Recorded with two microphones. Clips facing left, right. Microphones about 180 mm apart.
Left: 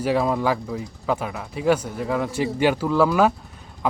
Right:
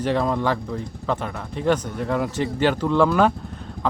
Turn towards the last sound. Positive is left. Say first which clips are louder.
# even
turn(degrees=5)  # may be behind; listen again after turning